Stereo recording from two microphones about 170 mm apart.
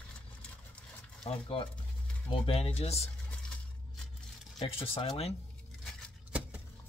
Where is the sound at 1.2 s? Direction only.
35° left (ahead or behind).